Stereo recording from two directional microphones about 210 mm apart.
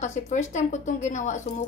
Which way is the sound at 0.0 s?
35° left (ahead or behind).